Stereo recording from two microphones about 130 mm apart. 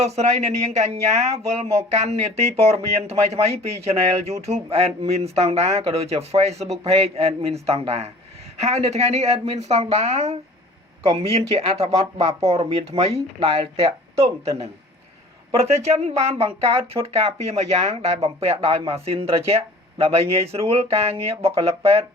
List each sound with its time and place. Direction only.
0.0 s speech: 55° right (ahead or behind)
15.5 s speech: 55° right (ahead or behind)